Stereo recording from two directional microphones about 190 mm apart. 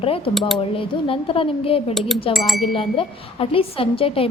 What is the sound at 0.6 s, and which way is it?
A woman's voice, 30° left (ahead or behind).